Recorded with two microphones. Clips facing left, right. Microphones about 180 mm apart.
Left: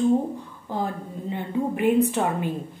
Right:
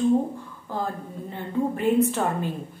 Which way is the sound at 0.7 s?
20° left (ahead or behind).